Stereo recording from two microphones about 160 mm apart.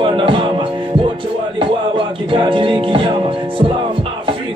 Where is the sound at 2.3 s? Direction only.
30° right (ahead or behind).